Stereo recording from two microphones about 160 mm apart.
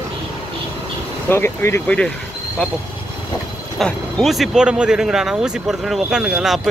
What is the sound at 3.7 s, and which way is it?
Speech, centre (ahead or behind).